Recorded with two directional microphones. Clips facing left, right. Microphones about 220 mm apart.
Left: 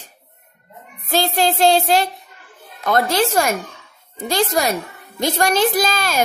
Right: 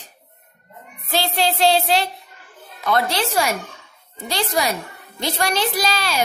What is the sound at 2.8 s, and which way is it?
A woman's voice, 45° left (ahead or behind).